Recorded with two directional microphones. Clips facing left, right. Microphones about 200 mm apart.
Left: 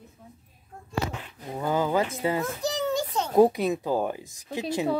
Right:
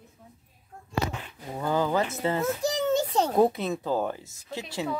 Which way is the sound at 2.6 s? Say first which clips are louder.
Right 3 dB; 15° right (ahead or behind).